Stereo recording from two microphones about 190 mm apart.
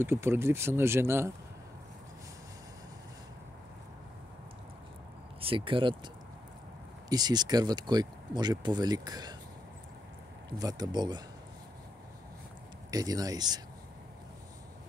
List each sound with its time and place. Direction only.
0.0 s speech: 15° right (ahead or behind)
5.4 s speech: 25° right (ahead or behind)
7.1 s speech: 20° right (ahead or behind)
10.6 s speech: 20° right (ahead or behind)
12.9 s speech: 20° right (ahead or behind)